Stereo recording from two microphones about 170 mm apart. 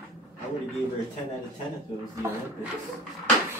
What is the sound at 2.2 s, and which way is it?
Speech, 15° right (ahead or behind).